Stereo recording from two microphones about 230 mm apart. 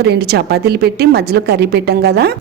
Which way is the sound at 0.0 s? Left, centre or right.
Right.